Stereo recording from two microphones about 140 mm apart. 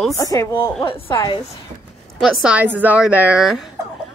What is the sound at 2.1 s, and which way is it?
A woman's voice, centre (ahead or behind).